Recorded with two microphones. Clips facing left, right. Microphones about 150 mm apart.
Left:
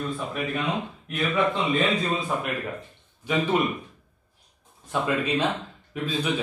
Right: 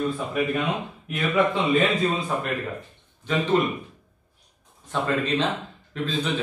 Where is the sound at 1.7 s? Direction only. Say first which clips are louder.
Right 3 dB; centre (ahead or behind).